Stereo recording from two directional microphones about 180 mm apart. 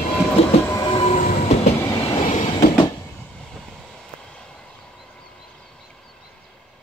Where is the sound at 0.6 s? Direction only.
20° left (ahead or behind); by 2.7 s 40° left (ahead or behind).